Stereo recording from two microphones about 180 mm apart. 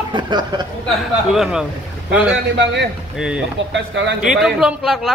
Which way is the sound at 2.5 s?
75° right (ahead or behind).